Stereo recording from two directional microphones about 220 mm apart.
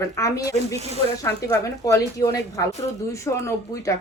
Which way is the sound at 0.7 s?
30° right (ahead or behind).